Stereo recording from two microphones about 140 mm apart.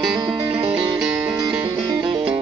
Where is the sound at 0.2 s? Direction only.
35° right (ahead or behind).